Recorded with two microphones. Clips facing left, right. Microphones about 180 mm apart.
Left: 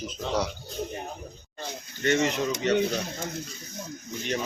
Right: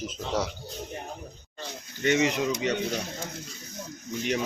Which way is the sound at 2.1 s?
10° right (ahead or behind).